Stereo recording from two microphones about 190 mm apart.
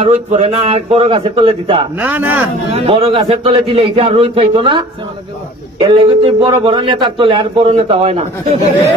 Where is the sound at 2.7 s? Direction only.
30° right (ahead or behind).